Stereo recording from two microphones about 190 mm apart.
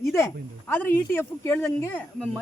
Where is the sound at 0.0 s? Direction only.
15° left (ahead or behind).